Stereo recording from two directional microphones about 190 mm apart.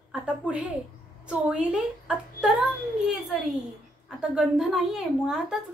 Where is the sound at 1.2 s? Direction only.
5° right (ahead or behind).